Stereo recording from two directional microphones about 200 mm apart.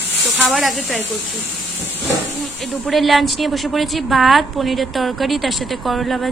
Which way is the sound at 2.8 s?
Centre (ahead or behind).